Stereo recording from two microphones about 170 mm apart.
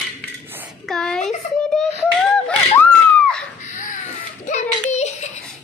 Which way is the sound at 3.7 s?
45° left (ahead or behind).